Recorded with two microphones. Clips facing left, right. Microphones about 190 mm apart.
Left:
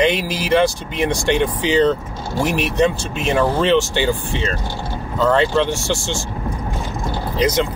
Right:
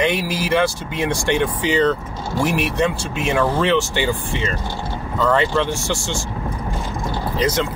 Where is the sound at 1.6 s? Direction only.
10° right (ahead or behind).